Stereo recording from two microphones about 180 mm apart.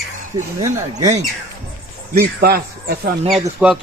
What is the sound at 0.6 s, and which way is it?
Speech, 20° right (ahead or behind).